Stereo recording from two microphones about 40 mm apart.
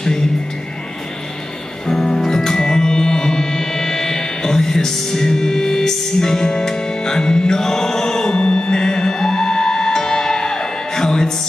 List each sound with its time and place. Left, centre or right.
1.9 s music: centre
8.4 s music: left
8.7 s music: centre